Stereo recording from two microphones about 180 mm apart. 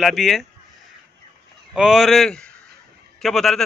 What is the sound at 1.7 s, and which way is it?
A man's voice, centre (ahead or behind).